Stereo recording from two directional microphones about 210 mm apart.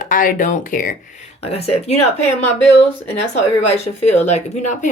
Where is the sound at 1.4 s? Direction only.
30° left (ahead or behind).